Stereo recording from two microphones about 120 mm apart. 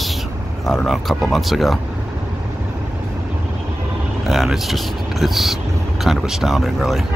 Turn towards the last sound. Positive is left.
turn(degrees=0)  # may be behind; listen again after turning